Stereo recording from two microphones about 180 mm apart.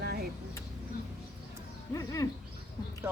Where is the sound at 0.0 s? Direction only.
60° right (ahead or behind).